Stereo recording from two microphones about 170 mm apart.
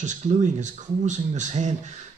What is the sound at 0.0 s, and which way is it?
Speech, 45° right (ahead or behind).